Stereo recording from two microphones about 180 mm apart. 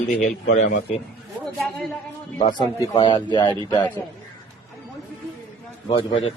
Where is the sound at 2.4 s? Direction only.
25° left (ahead or behind).